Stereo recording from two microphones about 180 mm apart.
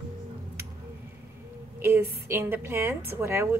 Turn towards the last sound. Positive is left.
turn(degrees=-10)  # may be behind; listen again after turning